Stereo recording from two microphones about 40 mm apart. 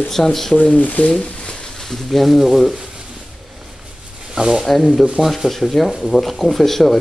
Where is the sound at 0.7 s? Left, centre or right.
Left.